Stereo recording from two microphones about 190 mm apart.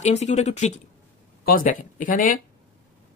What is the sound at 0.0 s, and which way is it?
Speech, 35° left (ahead or behind).